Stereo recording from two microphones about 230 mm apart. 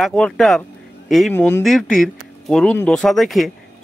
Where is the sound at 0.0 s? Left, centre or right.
Centre.